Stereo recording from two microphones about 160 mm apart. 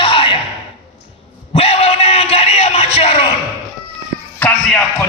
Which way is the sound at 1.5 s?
40° left (ahead or behind).